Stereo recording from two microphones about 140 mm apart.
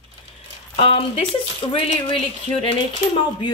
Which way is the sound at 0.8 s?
40° left (ahead or behind).